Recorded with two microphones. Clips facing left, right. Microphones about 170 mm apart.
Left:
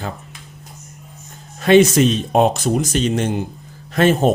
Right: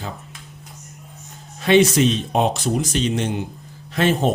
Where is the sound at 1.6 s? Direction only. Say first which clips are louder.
Left 3 dB; 45° left (ahead or behind).